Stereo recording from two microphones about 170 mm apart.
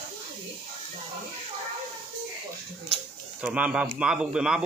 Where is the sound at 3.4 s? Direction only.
5° right (ahead or behind).